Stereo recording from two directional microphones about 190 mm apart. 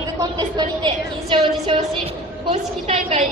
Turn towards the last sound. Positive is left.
turn(degrees=-30)  # may be behind; listen again after turning